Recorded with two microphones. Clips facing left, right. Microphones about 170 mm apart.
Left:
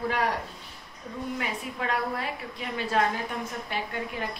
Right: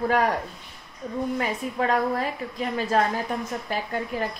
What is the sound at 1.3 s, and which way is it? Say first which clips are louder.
A woman's voice: right 6 dB; 40° right (ahead or behind).